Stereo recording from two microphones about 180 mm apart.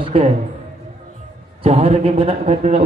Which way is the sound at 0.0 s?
30° right (ahead or behind).